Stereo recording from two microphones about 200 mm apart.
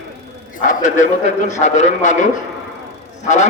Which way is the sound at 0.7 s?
40° left (ahead or behind).